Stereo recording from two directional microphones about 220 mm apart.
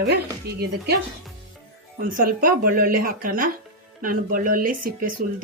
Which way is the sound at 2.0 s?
40° right (ahead or behind).